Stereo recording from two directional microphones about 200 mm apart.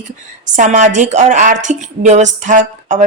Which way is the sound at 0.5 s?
40° right (ahead or behind).